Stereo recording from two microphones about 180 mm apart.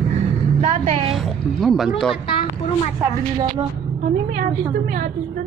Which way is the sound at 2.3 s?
30° left (ahead or behind).